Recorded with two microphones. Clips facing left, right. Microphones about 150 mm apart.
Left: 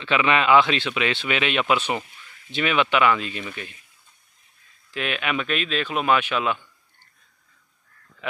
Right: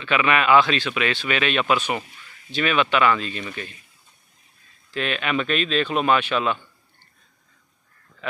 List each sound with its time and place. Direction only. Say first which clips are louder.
0.0 s speech: even; 25° left (ahead or behind)
4.9 s speech: right 2 dB; 10° left (ahead or behind)